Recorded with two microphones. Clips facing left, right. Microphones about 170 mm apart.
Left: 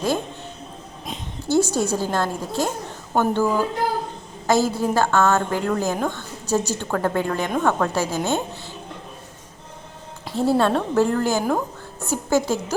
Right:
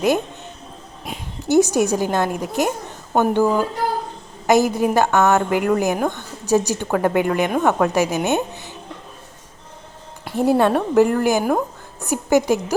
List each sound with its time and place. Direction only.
1.5 s a woman's voice: 15° right (ahead or behind)
10.3 s a woman's voice: 15° right (ahead or behind)